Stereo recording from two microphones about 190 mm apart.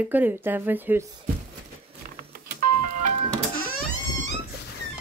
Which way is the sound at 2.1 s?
50° right (ahead or behind).